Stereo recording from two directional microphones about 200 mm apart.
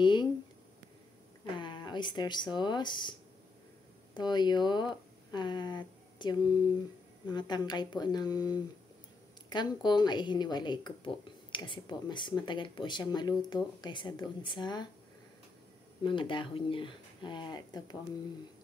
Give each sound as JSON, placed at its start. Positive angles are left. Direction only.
{"t": 0.0, "sound": "a sound", "side_deg": 20}
{"t": 1.6, "sound": "speech", "side_deg": 20}
{"t": 16.0, "sound": "speech", "side_deg": 25}